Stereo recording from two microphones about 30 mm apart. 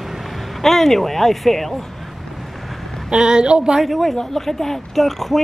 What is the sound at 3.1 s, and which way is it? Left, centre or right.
Speech, right.